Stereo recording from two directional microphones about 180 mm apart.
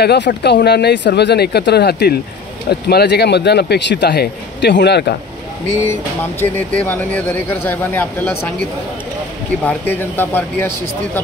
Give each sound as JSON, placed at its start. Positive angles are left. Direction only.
{"t": 0.0, "sound": "speech", "side_deg": 70}
{"t": 6.4, "sound": "speech", "side_deg": 10}
{"t": 9.7, "sound": "speech", "side_deg": 10}